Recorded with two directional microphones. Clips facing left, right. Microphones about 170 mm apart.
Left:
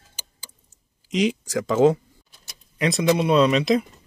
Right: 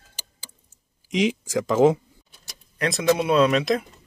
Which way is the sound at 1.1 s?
90° right.